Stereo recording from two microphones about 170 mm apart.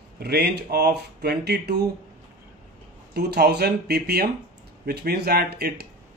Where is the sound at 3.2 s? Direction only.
70° right (ahead or behind).